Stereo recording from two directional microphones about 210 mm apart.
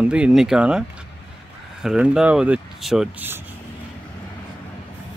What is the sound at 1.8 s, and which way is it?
Speech, 5° right (ahead or behind).